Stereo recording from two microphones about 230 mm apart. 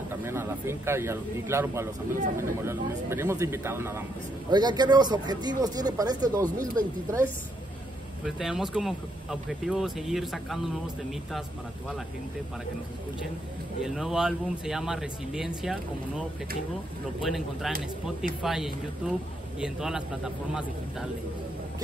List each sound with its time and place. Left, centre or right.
0.2 s speech: centre
8.4 s speech: centre
13.7 s speech: centre